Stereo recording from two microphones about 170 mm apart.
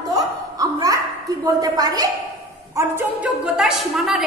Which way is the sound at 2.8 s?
10° right (ahead or behind).